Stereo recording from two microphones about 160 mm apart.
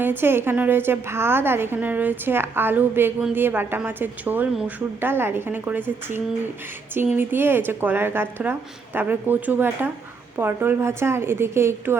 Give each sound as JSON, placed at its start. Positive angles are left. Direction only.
{"t": 0.0, "sound": "a woman's voice", "side_deg": -15}
{"t": 6.9, "sound": "a woman's voice", "side_deg": -10}